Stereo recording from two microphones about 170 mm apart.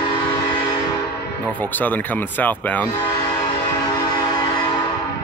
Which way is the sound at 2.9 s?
30° left (ahead or behind).